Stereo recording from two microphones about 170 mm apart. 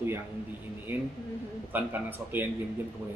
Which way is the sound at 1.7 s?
10° right (ahead or behind).